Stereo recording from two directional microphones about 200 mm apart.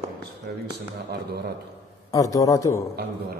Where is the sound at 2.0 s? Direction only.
15° left (ahead or behind).